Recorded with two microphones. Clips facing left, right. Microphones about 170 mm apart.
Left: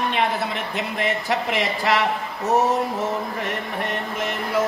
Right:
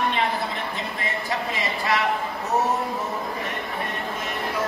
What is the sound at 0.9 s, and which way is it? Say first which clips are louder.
Speech: left 7 dB; 75° left (ahead or behind).